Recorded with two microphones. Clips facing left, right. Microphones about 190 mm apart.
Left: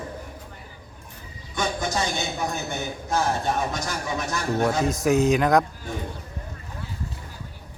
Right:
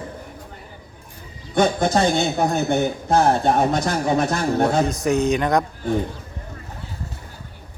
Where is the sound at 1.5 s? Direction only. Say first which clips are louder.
Right 9 dB; 60° right (ahead or behind).